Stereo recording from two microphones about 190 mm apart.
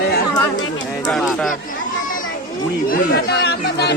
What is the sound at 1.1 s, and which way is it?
Speech, centre (ahead or behind).